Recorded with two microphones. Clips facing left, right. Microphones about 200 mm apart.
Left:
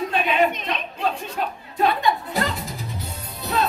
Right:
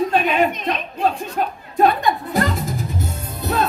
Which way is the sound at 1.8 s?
45° right (ahead or behind).